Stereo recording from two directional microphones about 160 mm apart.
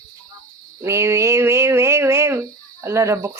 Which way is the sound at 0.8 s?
20° right (ahead or behind).